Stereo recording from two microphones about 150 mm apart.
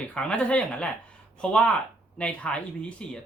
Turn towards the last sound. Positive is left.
turn(degrees=5)  # may be behind; listen again after turning